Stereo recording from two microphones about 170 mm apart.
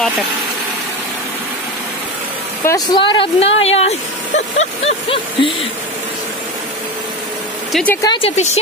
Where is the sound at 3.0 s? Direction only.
30° left (ahead or behind).